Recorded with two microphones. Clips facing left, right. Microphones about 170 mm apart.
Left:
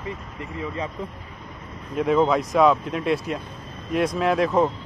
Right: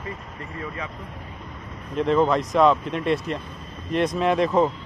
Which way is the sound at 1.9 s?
5° left (ahead or behind).